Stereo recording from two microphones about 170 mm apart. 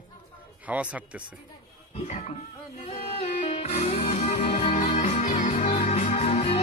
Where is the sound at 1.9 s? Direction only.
40° left (ahead or behind).